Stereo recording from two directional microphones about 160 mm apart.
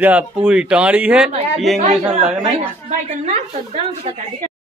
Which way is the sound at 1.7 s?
45° right (ahead or behind).